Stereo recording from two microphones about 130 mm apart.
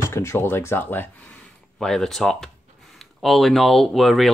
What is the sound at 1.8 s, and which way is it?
Speech, 5° left (ahead or behind).